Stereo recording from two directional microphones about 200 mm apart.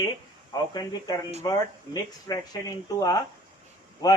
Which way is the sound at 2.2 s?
20° left (ahead or behind).